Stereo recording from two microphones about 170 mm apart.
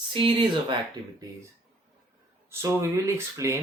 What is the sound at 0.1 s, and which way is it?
Speech, 30° right (ahead or behind).